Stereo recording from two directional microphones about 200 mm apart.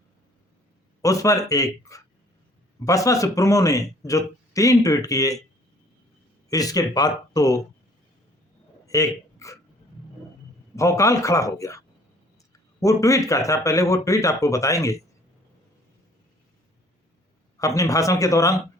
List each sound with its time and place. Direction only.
1.0 s speech: 15° left (ahead or behind)
6.5 s speech: 20° left (ahead or behind)
8.9 s a man's voice: 15° left (ahead or behind)
10.8 s speech: 15° left (ahead or behind)
12.8 s speech: 15° left (ahead or behind)
17.6 s speech: 15° left (ahead or behind)